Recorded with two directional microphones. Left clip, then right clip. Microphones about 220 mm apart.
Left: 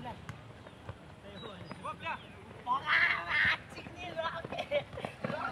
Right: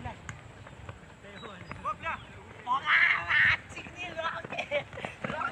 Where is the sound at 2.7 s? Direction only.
Centre (ahead or behind).